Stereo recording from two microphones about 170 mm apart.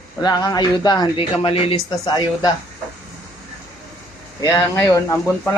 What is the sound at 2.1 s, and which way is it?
Speech, 25° left (ahead or behind).